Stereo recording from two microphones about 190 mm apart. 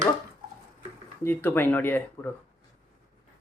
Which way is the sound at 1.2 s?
10° left (ahead or behind).